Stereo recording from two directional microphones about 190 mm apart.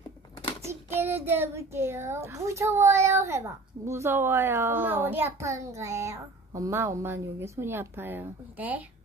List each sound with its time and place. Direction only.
0.7 s a child's voice: 10° right (ahead or behind)